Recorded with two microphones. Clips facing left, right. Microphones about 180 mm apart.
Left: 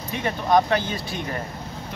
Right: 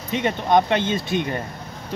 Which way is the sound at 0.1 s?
20° right (ahead or behind).